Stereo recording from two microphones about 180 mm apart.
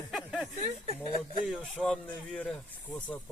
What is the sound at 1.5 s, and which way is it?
Speech, centre (ahead or behind).